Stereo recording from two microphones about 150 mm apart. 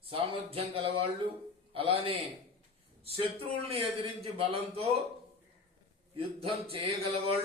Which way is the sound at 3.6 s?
40° right (ahead or behind).